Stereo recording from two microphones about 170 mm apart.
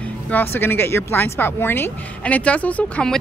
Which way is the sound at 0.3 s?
10° left (ahead or behind).